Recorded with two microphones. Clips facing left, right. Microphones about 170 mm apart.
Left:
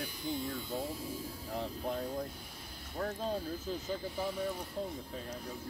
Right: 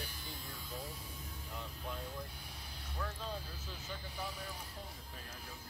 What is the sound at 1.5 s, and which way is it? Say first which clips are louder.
Speech: left 9 dB; 40° left (ahead or behind).